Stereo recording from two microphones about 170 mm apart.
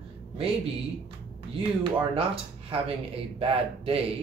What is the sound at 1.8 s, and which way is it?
Speech, 35° right (ahead or behind).